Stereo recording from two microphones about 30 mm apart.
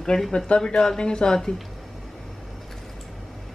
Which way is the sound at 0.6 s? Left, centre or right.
Left.